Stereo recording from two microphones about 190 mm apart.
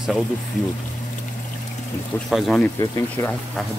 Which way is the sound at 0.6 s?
40° left (ahead or behind).